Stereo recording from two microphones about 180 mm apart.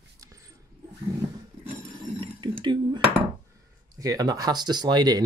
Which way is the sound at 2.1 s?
30° right (ahead or behind).